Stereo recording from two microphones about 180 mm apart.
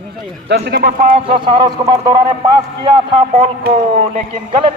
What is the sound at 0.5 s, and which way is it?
Speech, 65° right (ahead or behind).